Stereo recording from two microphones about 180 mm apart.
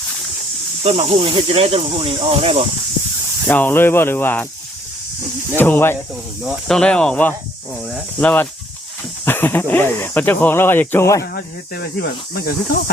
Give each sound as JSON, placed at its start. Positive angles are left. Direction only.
{"t": 0.8, "sound": "speech", "side_deg": -35}
{"t": 3.4, "sound": "speech", "side_deg": 10}
{"t": 5.5, "sound": "speech", "side_deg": 10}
{"t": 6.4, "sound": "speech", "side_deg": 0}
{"t": 11.2, "sound": "speech", "side_deg": 60}